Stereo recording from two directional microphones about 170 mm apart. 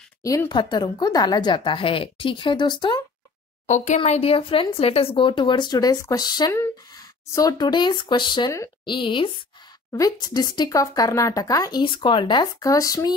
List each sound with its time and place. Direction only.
0.2 s speech: 20° left (ahead or behind)
3.6 s speech: 45° left (ahead or behind); by 13.1 s 20° left (ahead or behind)